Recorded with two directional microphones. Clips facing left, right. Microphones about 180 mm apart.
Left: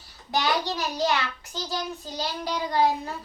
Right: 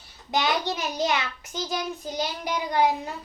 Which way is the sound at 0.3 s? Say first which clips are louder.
Even; 20° right (ahead or behind).